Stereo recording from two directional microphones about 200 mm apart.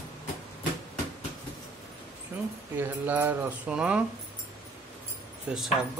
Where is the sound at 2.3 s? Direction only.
10° right (ahead or behind).